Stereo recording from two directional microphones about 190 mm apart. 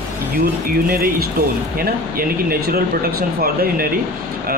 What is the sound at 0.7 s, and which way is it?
Speech, 50° right (ahead or behind).